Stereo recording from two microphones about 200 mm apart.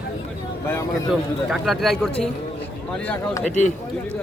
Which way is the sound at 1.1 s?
Centre (ahead or behind).